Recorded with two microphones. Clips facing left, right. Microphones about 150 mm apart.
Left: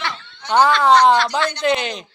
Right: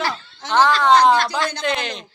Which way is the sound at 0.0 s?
35° right (ahead or behind).